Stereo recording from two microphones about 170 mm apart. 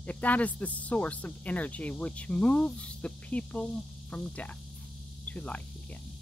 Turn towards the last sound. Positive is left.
turn(degrees=10)  # may be behind; listen again after turning